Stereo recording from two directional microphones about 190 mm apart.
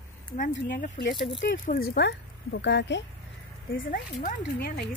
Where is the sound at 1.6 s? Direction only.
55° left (ahead or behind).